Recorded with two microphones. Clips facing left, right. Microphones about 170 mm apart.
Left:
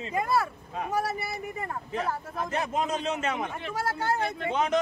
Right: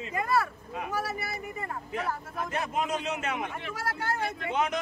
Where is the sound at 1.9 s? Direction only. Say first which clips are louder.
Left 2 dB; 30° left (ahead or behind).